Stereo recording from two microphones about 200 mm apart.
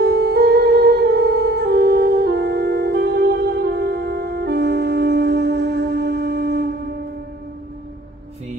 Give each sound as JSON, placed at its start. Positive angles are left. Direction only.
{"t": 0.0, "sound": "music", "side_deg": -55}